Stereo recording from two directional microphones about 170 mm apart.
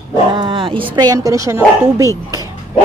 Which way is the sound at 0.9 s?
25° right (ahead or behind).